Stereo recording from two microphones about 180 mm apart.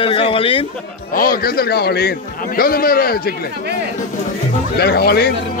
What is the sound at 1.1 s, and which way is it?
A man's voice, 55° left (ahead or behind).